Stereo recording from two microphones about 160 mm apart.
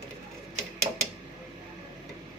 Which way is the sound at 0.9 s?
30° right (ahead or behind).